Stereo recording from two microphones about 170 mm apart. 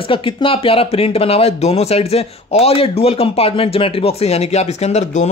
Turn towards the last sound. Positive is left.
turn(degrees=40)  # may be behind; listen again after turning